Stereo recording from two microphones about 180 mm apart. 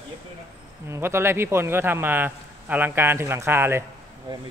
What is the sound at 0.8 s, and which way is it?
A man's voice, 15° right (ahead or behind).